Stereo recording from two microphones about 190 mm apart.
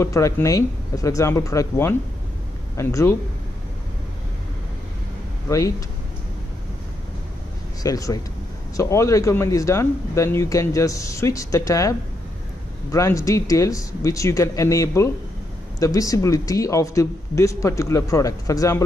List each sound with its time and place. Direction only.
0.0 s speech: 15° left (ahead or behind)
7.8 s speech: 20° left (ahead or behind)
12.9 s speech: 15° left (ahead or behind)